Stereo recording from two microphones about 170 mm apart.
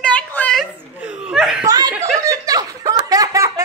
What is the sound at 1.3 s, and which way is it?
Laughter, 5° right (ahead or behind).